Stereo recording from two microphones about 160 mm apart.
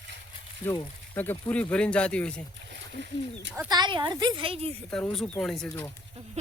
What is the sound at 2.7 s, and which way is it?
Speech, 90° right.